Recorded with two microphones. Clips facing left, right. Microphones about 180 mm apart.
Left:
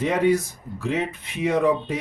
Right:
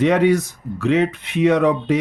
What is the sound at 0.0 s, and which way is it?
Speech, 75° right (ahead or behind).